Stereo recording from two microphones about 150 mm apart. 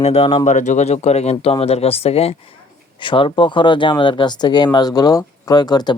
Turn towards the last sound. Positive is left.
turn(degrees=25)  # may be behind; listen again after turning